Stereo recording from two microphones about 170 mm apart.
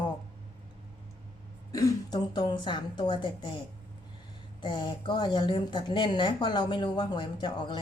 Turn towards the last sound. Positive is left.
turn(degrees=25)  # may be behind; listen again after turning